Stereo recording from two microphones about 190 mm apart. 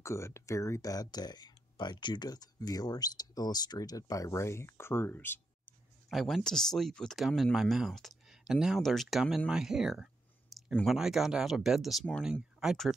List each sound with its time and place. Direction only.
0.0 s speech: 15° left (ahead or behind)
6.0 s speech: centre (ahead or behind)